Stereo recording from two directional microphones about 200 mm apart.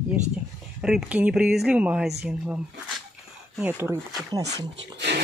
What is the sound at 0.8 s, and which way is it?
Speech, 5° right (ahead or behind).